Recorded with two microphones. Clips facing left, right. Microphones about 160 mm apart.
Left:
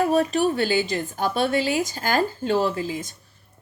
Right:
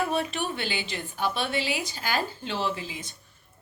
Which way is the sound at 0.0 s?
40° left (ahead or behind).